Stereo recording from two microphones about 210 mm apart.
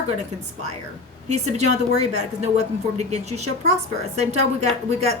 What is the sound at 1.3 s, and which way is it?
Speech, 30° right (ahead or behind).